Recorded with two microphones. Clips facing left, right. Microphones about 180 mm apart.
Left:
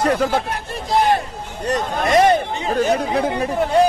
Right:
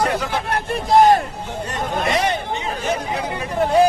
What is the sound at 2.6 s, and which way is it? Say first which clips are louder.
Speech: left 5 dB; 40° left (ahead or behind).